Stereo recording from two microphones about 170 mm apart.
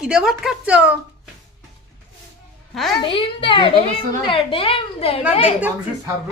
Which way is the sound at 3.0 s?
30° left (ahead or behind).